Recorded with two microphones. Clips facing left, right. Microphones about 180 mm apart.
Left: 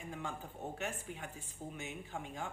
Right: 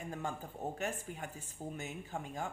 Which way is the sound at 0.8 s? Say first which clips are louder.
Right 2 dB; 45° right (ahead or behind).